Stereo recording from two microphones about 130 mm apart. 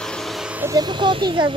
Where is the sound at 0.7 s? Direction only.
35° right (ahead or behind).